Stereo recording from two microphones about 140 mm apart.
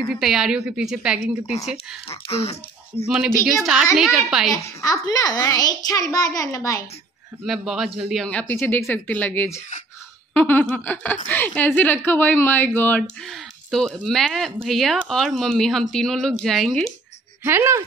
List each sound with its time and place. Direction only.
0.1 s a woman's voice: 5° right (ahead or behind)
3.1 s speech: 5° right (ahead or behind)
4.8 s a child's voice: 25° left (ahead or behind)
7.4 s a woman's voice: centre (ahead or behind)
17.4 s a woman's voice: 15° right (ahead or behind)